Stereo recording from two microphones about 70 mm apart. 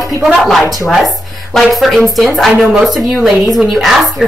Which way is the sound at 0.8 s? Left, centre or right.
Centre.